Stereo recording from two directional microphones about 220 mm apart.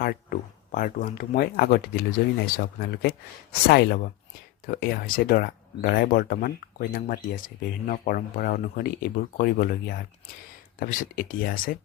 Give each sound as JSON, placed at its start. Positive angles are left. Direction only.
{"t": 0.0, "sound": "speech", "side_deg": 40}